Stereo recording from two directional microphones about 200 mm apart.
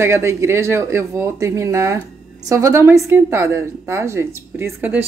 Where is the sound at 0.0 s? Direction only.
15° right (ahead or behind).